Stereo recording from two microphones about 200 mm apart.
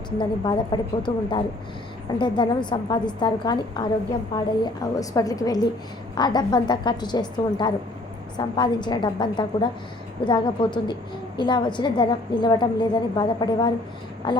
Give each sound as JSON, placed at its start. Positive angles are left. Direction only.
{"t": 0.2, "sound": "a woman's voice", "side_deg": 20}